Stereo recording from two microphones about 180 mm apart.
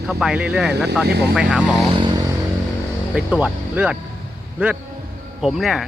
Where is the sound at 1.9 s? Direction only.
25° right (ahead or behind).